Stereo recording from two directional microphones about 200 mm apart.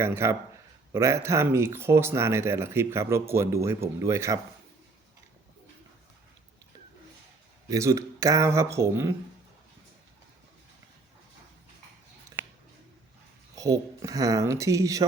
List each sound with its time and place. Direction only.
0.0 s speech: 15° right (ahead or behind)
7.7 s speech: 15° right (ahead or behind)
13.6 s speech: 15° right (ahead or behind)